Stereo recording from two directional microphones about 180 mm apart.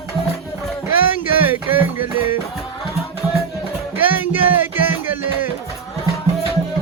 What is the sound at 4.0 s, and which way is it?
Music, 10° right (ahead or behind).